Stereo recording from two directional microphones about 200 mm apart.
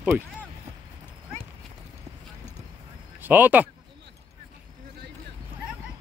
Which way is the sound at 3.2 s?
10° right (ahead or behind).